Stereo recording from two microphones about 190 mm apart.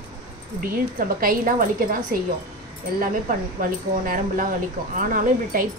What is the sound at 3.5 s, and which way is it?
A woman's voice, 45° right (ahead or behind).